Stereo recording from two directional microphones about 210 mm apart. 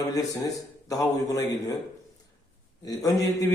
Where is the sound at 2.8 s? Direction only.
15° left (ahead or behind).